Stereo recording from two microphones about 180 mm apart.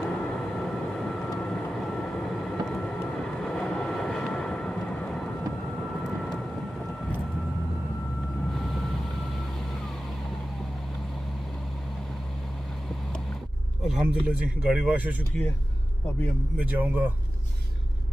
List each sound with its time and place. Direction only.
0.0 s vehicle: 5° left (ahead or behind)
13.8 s speech: 5° right (ahead or behind)
16.5 s speech: 10° right (ahead or behind)